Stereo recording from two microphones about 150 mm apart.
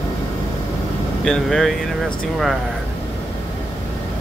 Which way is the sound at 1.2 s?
5° left (ahead or behind).